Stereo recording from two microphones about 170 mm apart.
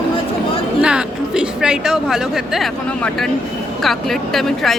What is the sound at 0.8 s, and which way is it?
Speech, 5° right (ahead or behind).